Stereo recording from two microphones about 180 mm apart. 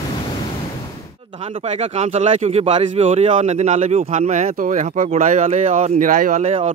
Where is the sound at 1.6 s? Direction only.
35° right (ahead or behind).